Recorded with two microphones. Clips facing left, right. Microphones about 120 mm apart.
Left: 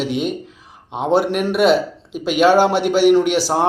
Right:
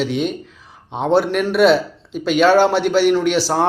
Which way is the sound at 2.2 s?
10° left (ahead or behind).